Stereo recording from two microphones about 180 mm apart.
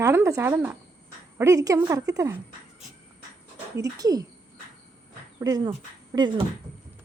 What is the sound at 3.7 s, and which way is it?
Speech, 20° right (ahead or behind).